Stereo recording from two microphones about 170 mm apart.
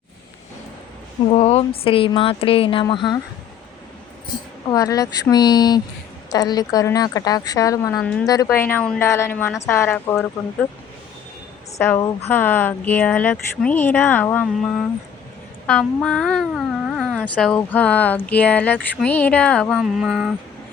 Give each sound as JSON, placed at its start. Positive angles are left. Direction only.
{"t": 1.3, "sound": "a woman's voice", "side_deg": 40}
{"t": 4.7, "sound": "a woman's voice", "side_deg": 20}
{"t": 8.0, "sound": "speech", "side_deg": 5}
{"t": 11.8, "sound": "speech", "side_deg": 15}